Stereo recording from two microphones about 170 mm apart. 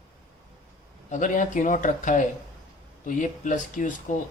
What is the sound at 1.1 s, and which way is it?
Speech, 50° left (ahead or behind).